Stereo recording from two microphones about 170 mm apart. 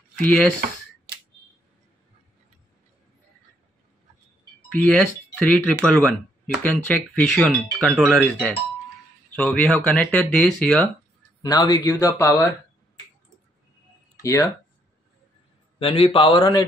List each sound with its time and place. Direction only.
0.2 s speech: 5° left (ahead or behind)
0.6 s a sound: 70° right (ahead or behind)
4.6 s speech: 5° left (ahead or behind)
11.4 s speech: 25° left (ahead or behind)
14.2 s speech: 20° left (ahead or behind)
15.8 s a man's voice: 30° left (ahead or behind)